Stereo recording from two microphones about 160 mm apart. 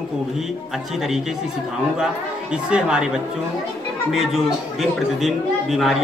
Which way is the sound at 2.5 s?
5° right (ahead or behind).